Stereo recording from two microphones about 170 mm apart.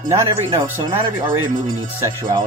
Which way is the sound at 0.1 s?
15° right (ahead or behind).